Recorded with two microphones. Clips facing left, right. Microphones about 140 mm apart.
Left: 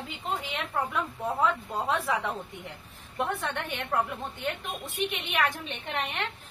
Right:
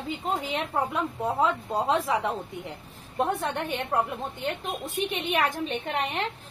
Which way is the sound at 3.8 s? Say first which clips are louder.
Right 2 dB; 30° right (ahead or behind).